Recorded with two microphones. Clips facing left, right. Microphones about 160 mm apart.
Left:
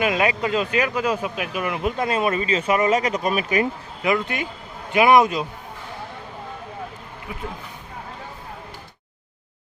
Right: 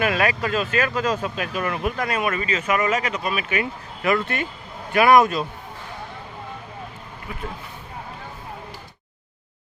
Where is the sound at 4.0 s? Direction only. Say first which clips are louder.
Right 1 dB; 15° left (ahead or behind).